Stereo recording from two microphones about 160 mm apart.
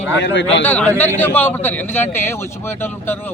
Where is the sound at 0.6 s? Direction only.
10° left (ahead or behind).